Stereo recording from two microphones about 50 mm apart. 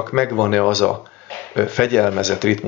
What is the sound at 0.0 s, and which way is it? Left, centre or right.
Speech, centre.